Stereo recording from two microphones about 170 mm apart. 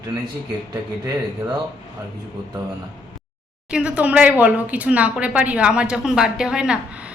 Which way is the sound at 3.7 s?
5° right (ahead or behind).